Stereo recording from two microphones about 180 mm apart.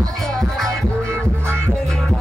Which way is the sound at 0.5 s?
Centre (ahead or behind).